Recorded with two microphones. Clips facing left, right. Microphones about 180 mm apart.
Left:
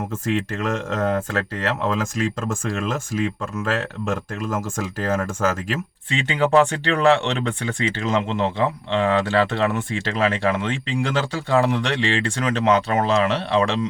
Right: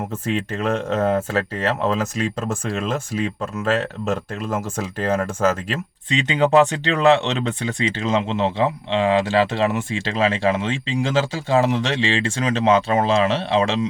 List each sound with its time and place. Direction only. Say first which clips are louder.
0.3 s speech: right 1 dB; centre (ahead or behind)
6.1 s speech: right 2 dB; 20° right (ahead or behind)